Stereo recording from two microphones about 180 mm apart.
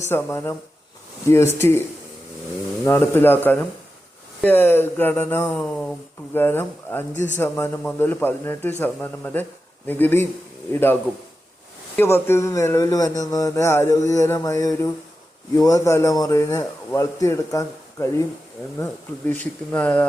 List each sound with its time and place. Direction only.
0.0 s a man's voice: 15° left (ahead or behind)
2.8 s a man's voice: 10° left (ahead or behind)
11.9 s a man's voice: 15° left (ahead or behind)
19.3 s a man's voice: 10° left (ahead or behind)